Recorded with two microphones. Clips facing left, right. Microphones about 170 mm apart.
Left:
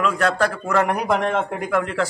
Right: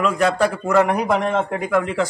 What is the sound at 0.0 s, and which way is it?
A man's voice, 10° right (ahead or behind).